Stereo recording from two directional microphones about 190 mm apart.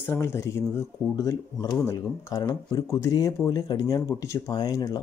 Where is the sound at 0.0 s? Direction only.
15° left (ahead or behind).